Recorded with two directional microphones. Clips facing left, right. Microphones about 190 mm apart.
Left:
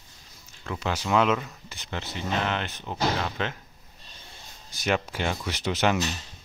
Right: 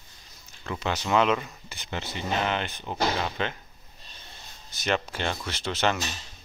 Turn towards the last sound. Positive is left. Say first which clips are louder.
# left 2 dB
turn(degrees=15)  # may be behind; listen again after turning